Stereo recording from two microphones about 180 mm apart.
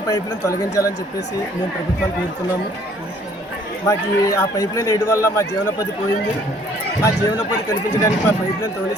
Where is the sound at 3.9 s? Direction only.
20° left (ahead or behind).